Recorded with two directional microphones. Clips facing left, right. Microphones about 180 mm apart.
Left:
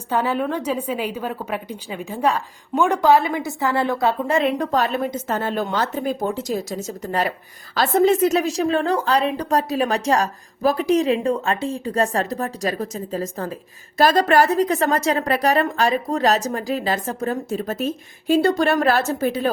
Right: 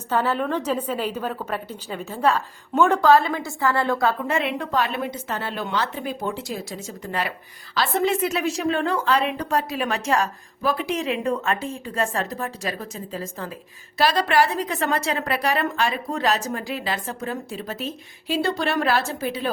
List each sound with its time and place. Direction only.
0.1 s a woman's voice: 10° left (ahead or behind)
4.3 s a woman's voice: 40° left (ahead or behind)